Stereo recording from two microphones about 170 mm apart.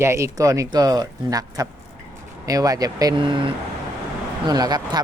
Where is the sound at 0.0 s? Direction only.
15° right (ahead or behind).